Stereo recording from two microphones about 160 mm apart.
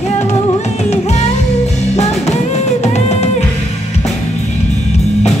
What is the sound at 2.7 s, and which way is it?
Music, 45° left (ahead or behind).